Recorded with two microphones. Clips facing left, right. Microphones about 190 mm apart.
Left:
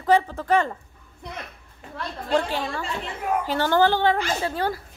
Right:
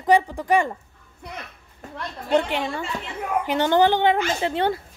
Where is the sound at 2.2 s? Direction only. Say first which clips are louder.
Right 2 dB; 20° right (ahead or behind).